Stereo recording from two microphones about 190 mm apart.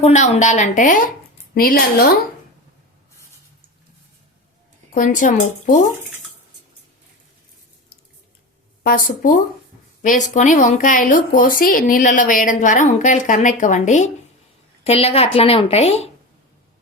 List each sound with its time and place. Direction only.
0.0 s a woman's voice: 40° left (ahead or behind)
4.9 s a woman's voice: 40° left (ahead or behind)
8.8 s a woman's voice: 50° left (ahead or behind)